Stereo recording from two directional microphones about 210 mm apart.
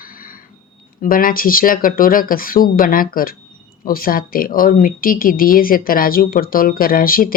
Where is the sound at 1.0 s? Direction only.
40° left (ahead or behind).